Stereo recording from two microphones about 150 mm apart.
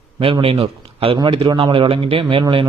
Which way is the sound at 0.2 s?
40° right (ahead or behind).